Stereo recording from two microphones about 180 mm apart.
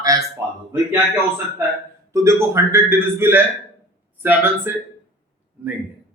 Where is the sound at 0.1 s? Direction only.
20° right (ahead or behind).